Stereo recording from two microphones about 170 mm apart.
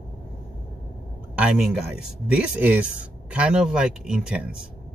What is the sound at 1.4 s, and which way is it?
Speech, 5° right (ahead or behind).